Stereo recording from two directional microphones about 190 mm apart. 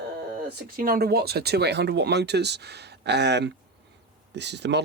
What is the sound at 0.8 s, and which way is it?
Speech, 50° right (ahead or behind).